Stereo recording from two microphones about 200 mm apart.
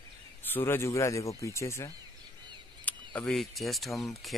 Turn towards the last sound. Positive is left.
turn(degrees=0)  # may be behind; listen again after turning